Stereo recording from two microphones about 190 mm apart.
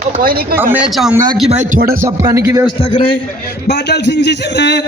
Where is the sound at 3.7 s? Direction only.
60° left (ahead or behind).